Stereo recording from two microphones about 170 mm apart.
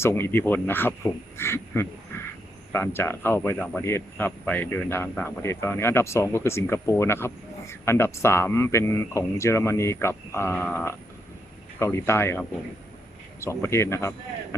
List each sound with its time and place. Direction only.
0.0 s speech: 15° left (ahead or behind)